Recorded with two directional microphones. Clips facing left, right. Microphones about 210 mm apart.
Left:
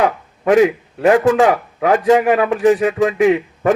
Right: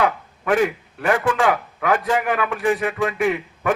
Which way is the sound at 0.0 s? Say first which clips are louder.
Left 5 dB; 40° left (ahead or behind).